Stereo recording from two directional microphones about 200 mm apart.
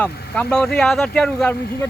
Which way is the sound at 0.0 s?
5° left (ahead or behind).